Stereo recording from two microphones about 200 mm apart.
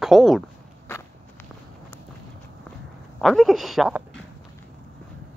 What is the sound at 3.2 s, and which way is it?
Speech, centre (ahead or behind).